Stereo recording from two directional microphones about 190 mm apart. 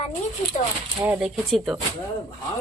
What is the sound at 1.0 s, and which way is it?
Speech, 5° right (ahead or behind).